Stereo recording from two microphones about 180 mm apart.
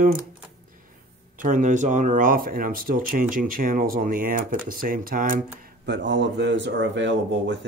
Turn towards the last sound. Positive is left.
turn(degrees=-80)